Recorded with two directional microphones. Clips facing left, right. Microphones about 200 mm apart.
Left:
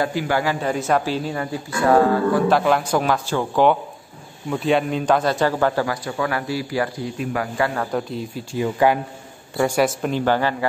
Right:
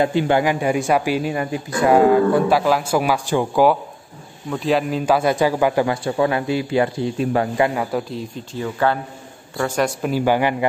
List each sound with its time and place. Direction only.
0.0 s speech: 25° right (ahead or behind)
2.5 s speech: 5° right (ahead or behind)
4.5 s speech: centre (ahead or behind)
5.9 s speech: 25° right (ahead or behind)
8.1 s speech: 5° left (ahead or behind)
9.8 s speech: centre (ahead or behind)